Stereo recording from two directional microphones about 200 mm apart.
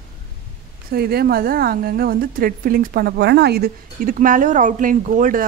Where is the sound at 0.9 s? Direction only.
50° right (ahead or behind).